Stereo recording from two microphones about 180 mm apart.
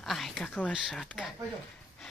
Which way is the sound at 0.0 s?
Centre (ahead or behind).